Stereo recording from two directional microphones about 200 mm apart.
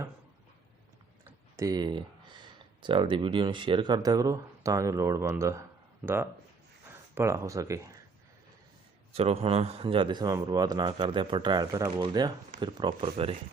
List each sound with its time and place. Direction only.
1.5 s a man's voice: 20° right (ahead or behind)
7.2 s speech: 15° right (ahead or behind)
9.1 s a man's voice: 30° right (ahead or behind)